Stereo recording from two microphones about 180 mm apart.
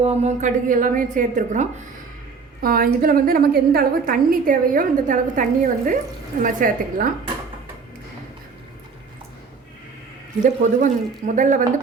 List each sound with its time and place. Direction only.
0.0 s a woman's voice: 35° right (ahead or behind)
10.4 s a woman's voice: 45° right (ahead or behind)